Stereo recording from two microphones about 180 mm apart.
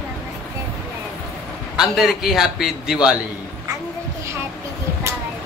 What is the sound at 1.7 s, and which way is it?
A man's voice, centre (ahead or behind).